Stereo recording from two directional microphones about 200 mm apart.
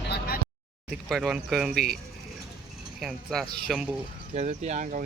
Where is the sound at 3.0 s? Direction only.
Centre (ahead or behind).